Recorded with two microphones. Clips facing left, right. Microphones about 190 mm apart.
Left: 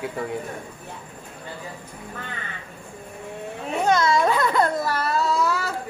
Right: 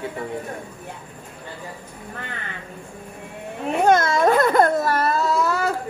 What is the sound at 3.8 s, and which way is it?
Baby cry, 50° right (ahead or behind).